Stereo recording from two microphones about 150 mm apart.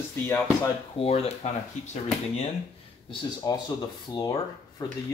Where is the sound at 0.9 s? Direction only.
45° left (ahead or behind).